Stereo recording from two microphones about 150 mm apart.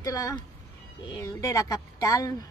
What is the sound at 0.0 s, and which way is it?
A woman's voice, 25° left (ahead or behind).